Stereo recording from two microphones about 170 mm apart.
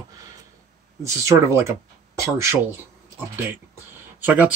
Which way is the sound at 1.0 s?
20° right (ahead or behind).